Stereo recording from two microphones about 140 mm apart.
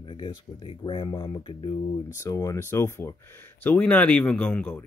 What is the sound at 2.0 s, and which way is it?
Speech, 25° left (ahead or behind).